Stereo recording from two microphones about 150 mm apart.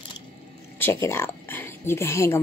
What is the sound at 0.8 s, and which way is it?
Speech, 15° left (ahead or behind).